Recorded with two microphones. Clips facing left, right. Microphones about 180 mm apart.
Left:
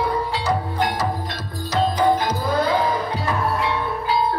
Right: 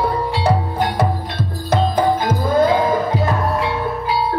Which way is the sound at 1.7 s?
50° right (ahead or behind).